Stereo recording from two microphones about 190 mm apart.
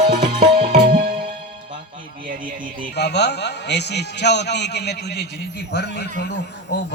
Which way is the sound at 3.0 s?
65° left (ahead or behind).